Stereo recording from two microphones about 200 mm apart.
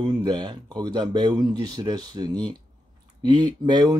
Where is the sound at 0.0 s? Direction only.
20° right (ahead or behind).